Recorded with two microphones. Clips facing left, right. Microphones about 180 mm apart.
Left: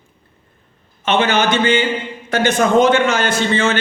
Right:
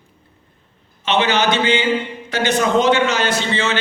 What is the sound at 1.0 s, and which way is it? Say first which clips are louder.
Speech: left 1 dB; 50° left (ahead or behind).